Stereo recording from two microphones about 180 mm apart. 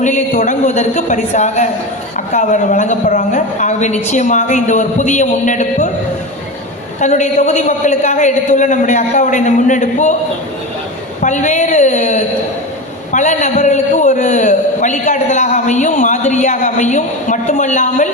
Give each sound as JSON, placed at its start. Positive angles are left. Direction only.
{"t": 0.0, "sound": "a man's voice", "side_deg": 40}
{"t": 7.0, "sound": "a man's voice", "side_deg": 40}
{"t": 11.2, "sound": "a man's voice", "side_deg": 40}